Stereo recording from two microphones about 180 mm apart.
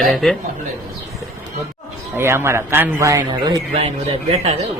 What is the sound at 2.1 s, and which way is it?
Speech, 15° right (ahead or behind).